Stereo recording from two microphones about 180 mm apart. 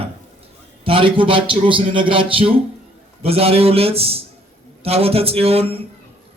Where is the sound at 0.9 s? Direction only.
30° right (ahead or behind).